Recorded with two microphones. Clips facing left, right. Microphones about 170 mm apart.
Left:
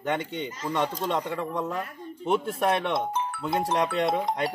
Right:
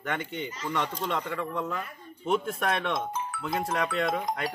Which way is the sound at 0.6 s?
20° left (ahead or behind).